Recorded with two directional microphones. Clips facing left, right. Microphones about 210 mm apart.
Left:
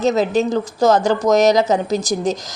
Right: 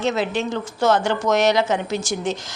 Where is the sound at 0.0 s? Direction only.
40° left (ahead or behind).